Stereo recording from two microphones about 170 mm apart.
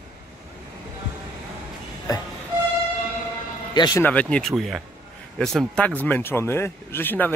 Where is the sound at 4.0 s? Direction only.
10° left (ahead or behind).